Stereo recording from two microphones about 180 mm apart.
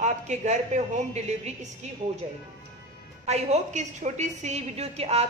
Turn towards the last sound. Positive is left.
turn(degrees=-35)  # may be behind; listen again after turning